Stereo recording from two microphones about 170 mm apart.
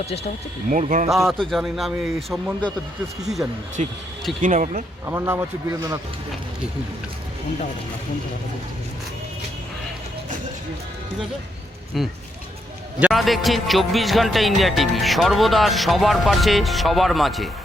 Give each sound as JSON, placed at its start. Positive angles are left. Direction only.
{"t": 0.7, "sound": "speech", "side_deg": -50}
{"t": 1.0, "sound": "music", "side_deg": 0}
{"t": 3.8, "sound": "speech", "side_deg": -45}
{"t": 5.0, "sound": "speech", "side_deg": -15}
{"t": 11.9, "sound": "music", "side_deg": 0}